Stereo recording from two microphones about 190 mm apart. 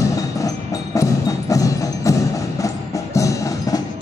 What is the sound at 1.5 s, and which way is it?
Wood block, 15° left (ahead or behind).